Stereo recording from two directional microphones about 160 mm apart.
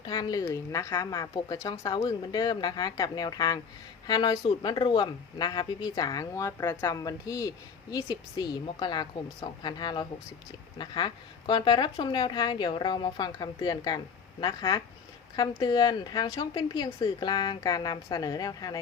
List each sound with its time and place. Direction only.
0.0 s speech: 25° left (ahead or behind)